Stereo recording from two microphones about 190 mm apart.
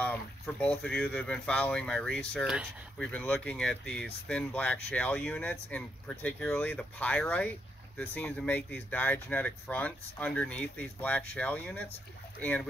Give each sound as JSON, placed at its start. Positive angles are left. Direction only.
{"t": 0.0, "sound": "speech", "side_deg": 10}